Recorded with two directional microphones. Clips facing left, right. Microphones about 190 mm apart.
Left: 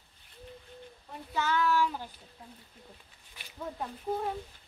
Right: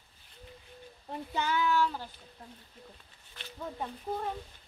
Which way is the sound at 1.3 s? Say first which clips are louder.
Left 1 dB; 15° right (ahead or behind).